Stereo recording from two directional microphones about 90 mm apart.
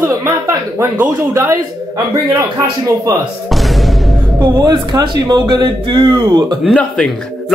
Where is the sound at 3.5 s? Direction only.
Centre (ahead or behind).